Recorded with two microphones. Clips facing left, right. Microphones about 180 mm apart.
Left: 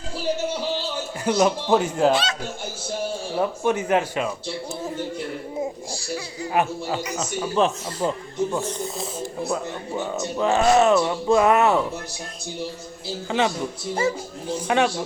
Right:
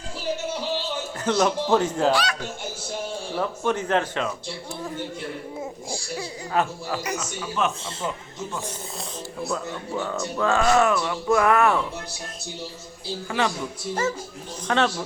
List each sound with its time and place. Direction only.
1.2 s speech: 10° left (ahead or behind)
2.0 s speech: 25° left (ahead or behind)
3.3 s speech: 10° left (ahead or behind)
6.6 s speech: 15° left (ahead or behind)
7.2 s speech: 30° left (ahead or behind)
8.8 s speech: centre (ahead or behind)
9.5 s speech: 20° left (ahead or behind)
13.2 s speech: 20° left (ahead or behind)
14.5 s speech: 10° left (ahead or behind)